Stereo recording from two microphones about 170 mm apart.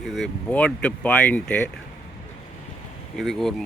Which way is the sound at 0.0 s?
Centre (ahead or behind).